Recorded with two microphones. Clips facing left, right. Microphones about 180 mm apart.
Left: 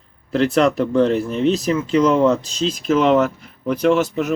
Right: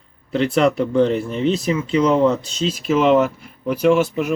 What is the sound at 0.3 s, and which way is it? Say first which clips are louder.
Speech: left 1 dB; centre (ahead or behind).